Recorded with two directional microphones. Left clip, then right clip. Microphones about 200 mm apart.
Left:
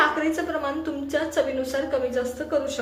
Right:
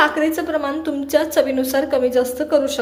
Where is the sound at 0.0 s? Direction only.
35° right (ahead or behind).